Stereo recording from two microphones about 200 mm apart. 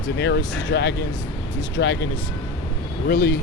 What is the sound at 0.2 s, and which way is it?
Speech, 60° left (ahead or behind).